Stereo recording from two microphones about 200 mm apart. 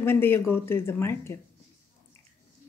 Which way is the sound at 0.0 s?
10° left (ahead or behind).